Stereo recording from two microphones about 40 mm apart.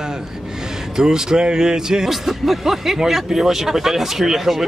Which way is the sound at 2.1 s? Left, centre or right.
Centre.